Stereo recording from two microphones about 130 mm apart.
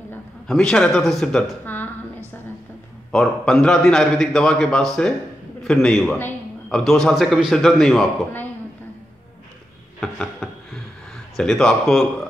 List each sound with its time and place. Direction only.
0.5 s a man's voice: 5° left (ahead or behind)
3.1 s a man's voice: 5° left (ahead or behind)
9.9 s a sound: 5° left (ahead or behind)
11.3 s a man's voice: centre (ahead or behind)